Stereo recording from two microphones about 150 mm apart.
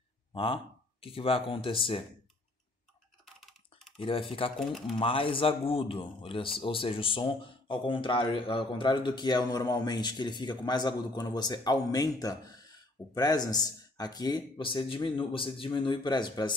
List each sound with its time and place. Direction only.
0.3 s a man's voice: 35° left (ahead or behind)
4.0 s speech: 35° left (ahead or behind)